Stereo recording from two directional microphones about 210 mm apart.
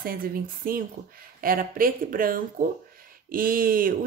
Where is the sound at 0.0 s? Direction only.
45° right (ahead or behind).